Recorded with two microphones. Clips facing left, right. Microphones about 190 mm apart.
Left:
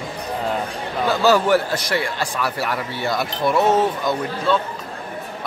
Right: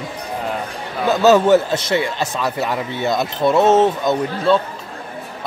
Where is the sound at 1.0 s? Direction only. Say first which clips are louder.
Right 4 dB; 20° right (ahead or behind).